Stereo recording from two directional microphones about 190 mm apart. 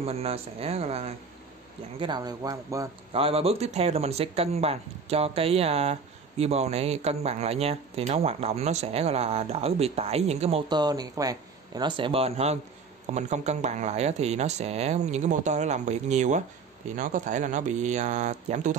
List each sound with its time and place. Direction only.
0.0 s speech: 30° right (ahead or behind)
2.0 s speech: 20° right (ahead or behind)
3.1 s speech: 30° right (ahead or behind)
10.7 s speech: 20° right (ahead or behind); by 18.8 s 40° right (ahead or behind)